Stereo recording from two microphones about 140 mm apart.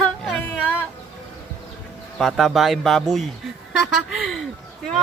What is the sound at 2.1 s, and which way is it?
Speech, centre (ahead or behind).